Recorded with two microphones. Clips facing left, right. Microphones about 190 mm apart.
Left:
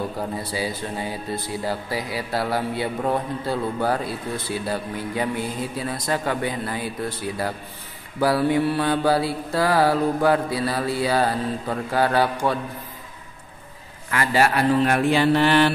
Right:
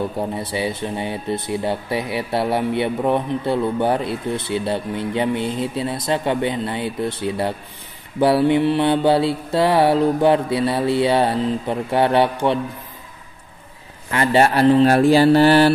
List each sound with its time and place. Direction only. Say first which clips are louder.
0.2 s speech: right 4 dB; 25° right (ahead or behind)
14.1 s speech: right 4 dB; 25° right (ahead or behind)